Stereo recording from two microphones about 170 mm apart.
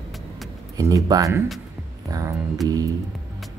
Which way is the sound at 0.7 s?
20° right (ahead or behind).